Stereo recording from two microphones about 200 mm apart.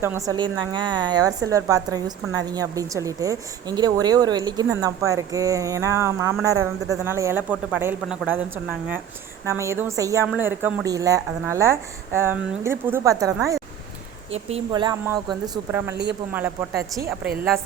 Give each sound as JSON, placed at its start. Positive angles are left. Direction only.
{"t": 0.0, "sound": "a woman's voice", "side_deg": -15}
{"t": 8.0, "sound": "speech", "side_deg": 0}
{"t": 8.3, "sound": "speech", "side_deg": -10}
{"t": 14.7, "sound": "a woman's voice", "side_deg": -20}